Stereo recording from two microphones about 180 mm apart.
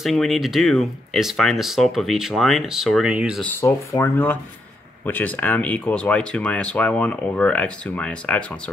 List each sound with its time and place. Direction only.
0.0 s speech: centre (ahead or behind)
3.6 s speech: 15° left (ahead or behind)